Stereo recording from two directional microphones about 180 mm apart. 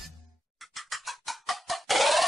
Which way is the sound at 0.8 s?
Centre (ahead or behind).